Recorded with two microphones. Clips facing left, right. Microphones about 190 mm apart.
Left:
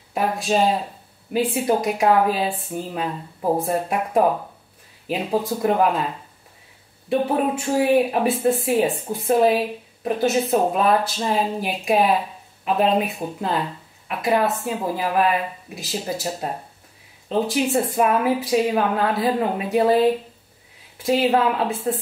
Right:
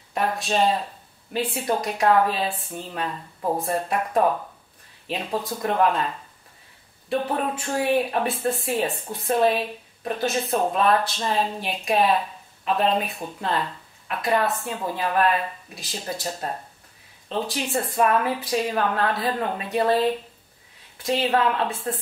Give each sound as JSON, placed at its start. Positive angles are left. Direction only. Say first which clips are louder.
{"t": 0.1, "sound": "speech", "louder": "left 3 dB", "side_deg": 5}
{"t": 3.3, "sound": "speech", "louder": "left 4 dB", "side_deg": 20}
{"t": 3.6, "sound": "speech", "louder": "left 2 dB", "side_deg": 5}